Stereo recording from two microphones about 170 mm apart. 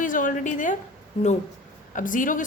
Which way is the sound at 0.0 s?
50° left (ahead or behind).